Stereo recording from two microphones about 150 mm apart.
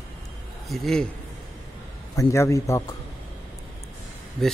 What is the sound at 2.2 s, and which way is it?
Speech, 20° left (ahead or behind).